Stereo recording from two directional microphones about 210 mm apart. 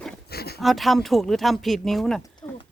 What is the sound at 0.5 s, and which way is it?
Speech, centre (ahead or behind).